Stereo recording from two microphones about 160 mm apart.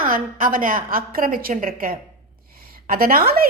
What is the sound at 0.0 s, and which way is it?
A woman's voice, 60° right (ahead or behind).